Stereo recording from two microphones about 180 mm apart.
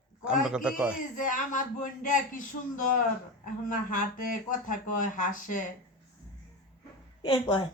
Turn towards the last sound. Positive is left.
turn(degrees=25)  # may be behind; listen again after turning